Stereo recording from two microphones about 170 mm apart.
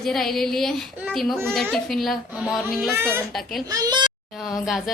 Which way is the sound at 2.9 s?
15° right (ahead or behind).